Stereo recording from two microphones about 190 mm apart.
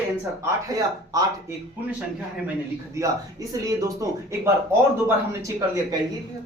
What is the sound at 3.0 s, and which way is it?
Speech, 15° right (ahead or behind).